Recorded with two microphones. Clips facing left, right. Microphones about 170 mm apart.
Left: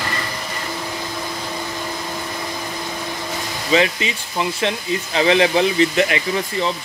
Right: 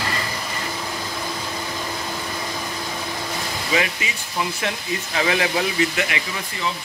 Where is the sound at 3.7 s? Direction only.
25° left (ahead or behind).